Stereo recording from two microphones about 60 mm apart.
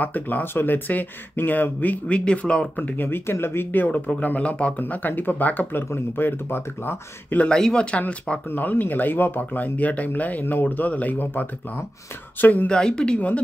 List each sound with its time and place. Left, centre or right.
0.0 s speech: left
2.1 s speech: centre
3.1 s speech: left
7.4 s speech: centre
8.5 s speech: left
12.6 s speech: centre